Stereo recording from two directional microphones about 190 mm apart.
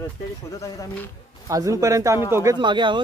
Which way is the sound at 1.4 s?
15° right (ahead or behind).